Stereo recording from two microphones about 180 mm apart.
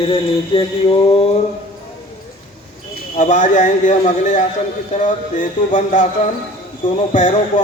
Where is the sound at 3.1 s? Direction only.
45° left (ahead or behind).